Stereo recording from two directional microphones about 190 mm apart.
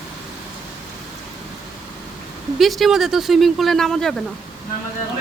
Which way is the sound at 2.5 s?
Centre (ahead or behind).